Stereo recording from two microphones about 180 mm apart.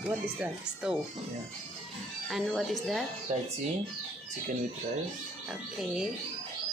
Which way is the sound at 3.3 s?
40° right (ahead or behind).